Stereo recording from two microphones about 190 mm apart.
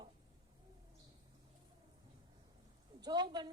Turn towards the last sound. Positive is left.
turn(degrees=-25)  # may be behind; listen again after turning